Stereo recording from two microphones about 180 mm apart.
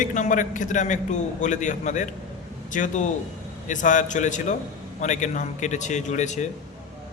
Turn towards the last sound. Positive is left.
turn(degrees=40)  # may be behind; listen again after turning